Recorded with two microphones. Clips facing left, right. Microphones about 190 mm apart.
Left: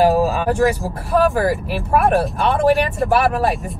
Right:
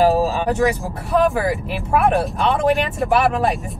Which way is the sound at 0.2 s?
Centre (ahead or behind).